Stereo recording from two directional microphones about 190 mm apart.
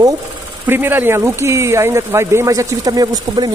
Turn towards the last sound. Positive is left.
turn(degrees=-20)  # may be behind; listen again after turning